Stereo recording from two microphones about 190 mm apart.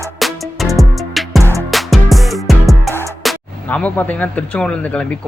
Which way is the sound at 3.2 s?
5° left (ahead or behind).